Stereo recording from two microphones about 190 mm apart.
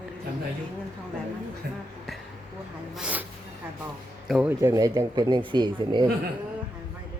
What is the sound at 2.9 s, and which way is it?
Speech, 5° right (ahead or behind).